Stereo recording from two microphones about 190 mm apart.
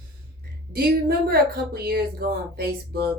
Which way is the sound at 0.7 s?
55° right (ahead or behind).